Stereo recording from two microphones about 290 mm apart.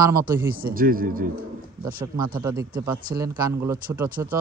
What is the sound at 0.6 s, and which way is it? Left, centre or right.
Speech, right.